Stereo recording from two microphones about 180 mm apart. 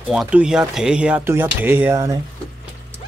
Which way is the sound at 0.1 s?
5° right (ahead or behind).